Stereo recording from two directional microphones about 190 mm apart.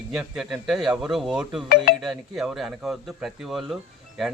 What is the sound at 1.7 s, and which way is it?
Speech, 55° left (ahead or behind).